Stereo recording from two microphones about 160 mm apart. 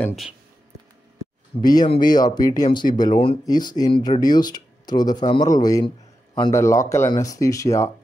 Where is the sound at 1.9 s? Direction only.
25° left (ahead or behind).